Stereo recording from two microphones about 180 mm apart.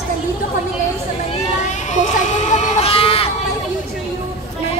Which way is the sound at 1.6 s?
40° left (ahead or behind).